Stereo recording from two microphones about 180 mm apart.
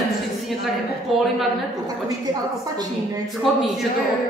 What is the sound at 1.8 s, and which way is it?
A woman's voice, 20° right (ahead or behind).